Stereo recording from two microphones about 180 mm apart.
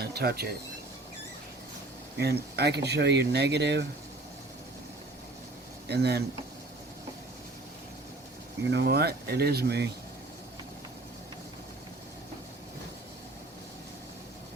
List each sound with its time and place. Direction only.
0.0 s speech: 60° right (ahead or behind)
2.1 s speech: 65° right (ahead or behind)
5.9 s speech: 65° right (ahead or behind)
8.7 s speech: 65° right (ahead or behind)